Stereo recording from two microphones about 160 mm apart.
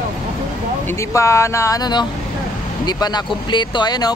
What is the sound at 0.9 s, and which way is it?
Speech, 15° left (ahead or behind).